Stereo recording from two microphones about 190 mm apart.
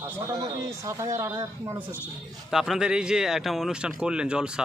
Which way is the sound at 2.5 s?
Centre (ahead or behind).